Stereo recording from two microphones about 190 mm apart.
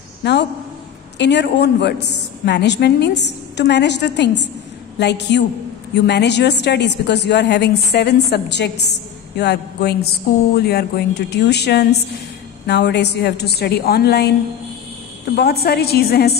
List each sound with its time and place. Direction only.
0.2 s a man's voice: 65° left (ahead or behind)
15.3 s a woman's voice: 55° left (ahead or behind)